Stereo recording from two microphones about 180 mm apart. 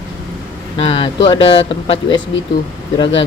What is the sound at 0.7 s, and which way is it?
Speech, 30° left (ahead or behind).